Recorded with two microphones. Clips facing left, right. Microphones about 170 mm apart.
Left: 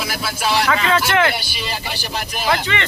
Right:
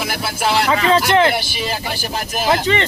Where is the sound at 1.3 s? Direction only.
50° right (ahead or behind).